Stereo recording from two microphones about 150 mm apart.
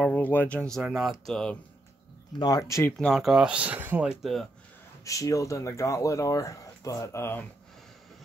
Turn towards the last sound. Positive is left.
turn(degrees=15)  # may be behind; listen again after turning